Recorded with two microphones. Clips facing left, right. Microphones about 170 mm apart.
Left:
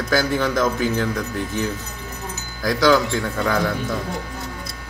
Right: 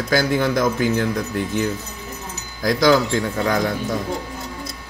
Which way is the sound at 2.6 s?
15° right (ahead or behind).